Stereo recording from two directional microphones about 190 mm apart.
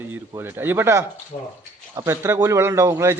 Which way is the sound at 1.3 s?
40° left (ahead or behind).